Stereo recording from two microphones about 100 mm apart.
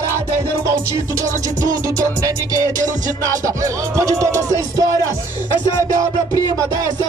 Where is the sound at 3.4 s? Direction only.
30° right (ahead or behind).